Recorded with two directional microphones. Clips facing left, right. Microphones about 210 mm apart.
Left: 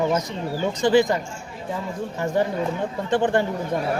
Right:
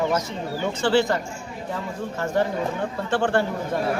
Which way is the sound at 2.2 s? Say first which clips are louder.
Left 1 dB; 15° left (ahead or behind).